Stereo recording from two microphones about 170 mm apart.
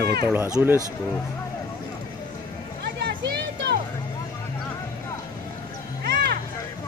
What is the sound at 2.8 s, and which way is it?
Music, 70° right (ahead or behind).